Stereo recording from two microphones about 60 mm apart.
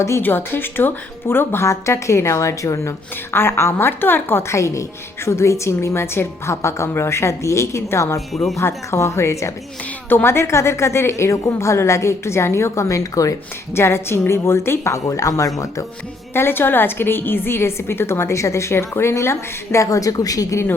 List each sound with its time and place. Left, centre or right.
0.2 s speech: left
1.6 s a woman's voice: left
3.3 s a woman's voice: left
8.3 s speech: centre
8.6 s a woman's voice: left
13.7 s a woman's voice: left
14.9 s a woman's voice: left
16.3 s a woman's voice: left